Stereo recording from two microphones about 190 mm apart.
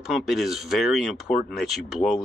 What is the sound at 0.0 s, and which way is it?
Speech, centre (ahead or behind).